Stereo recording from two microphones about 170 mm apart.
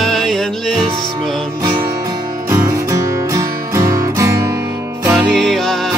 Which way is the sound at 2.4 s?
15° right (ahead or behind).